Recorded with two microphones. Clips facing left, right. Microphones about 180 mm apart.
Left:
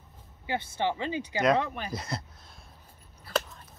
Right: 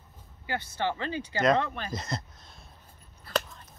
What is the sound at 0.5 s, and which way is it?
Speech, 20° left (ahead or behind).